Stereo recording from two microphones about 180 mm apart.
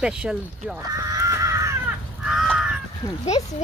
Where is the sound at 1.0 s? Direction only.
15° right (ahead or behind).